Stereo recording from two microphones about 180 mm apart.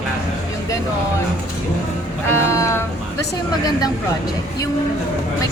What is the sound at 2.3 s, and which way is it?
Speech, 15° left (ahead or behind).